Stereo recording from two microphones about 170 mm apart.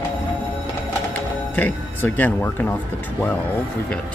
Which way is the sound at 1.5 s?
10° left (ahead or behind).